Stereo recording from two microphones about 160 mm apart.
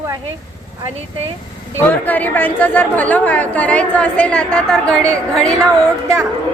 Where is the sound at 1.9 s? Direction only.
10° left (ahead or behind).